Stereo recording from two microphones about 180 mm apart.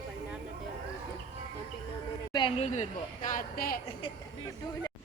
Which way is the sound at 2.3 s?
25° left (ahead or behind).